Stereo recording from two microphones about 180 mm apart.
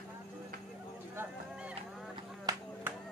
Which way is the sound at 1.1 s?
5° right (ahead or behind).